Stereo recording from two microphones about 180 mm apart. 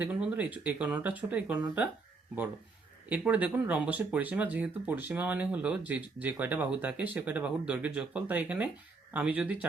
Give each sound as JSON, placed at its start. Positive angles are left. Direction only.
{"t": 0.0, "sound": "speech", "side_deg": -5}
{"t": 3.1, "sound": "speech", "side_deg": -10}